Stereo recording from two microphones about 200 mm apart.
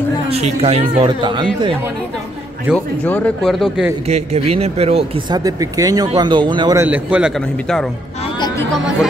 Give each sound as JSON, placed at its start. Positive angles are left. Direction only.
{"t": 0.3, "sound": "speech", "side_deg": -30}
{"t": 2.7, "sound": "speech", "side_deg": 5}
{"t": 4.1, "sound": "a man's voice", "side_deg": -30}